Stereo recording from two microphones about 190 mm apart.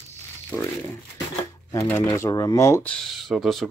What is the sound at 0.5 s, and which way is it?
Speech, 10° left (ahead or behind).